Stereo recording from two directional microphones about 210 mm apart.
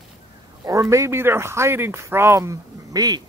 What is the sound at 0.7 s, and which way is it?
Speech, 15° right (ahead or behind).